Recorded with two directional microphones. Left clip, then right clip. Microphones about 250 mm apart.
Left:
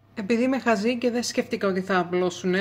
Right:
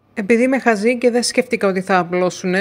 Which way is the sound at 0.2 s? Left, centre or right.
Right.